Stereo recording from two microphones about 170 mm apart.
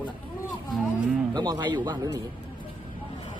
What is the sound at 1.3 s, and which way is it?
Speech, 25° right (ahead or behind).